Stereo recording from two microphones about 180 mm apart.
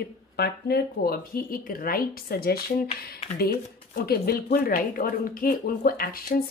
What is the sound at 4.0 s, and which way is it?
Speech, 55° left (ahead or behind).